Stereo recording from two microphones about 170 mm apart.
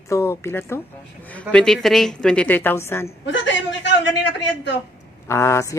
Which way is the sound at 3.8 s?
90° left.